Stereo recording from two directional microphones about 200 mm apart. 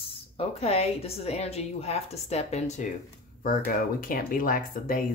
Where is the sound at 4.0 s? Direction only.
45° left (ahead or behind).